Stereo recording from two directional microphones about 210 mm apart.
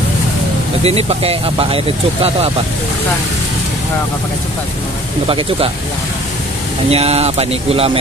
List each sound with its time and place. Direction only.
0.8 s speech: 30° right (ahead or behind)
6.9 s speech: 30° right (ahead or behind)